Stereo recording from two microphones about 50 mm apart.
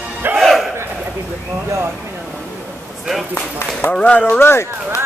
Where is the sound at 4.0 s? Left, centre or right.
Left.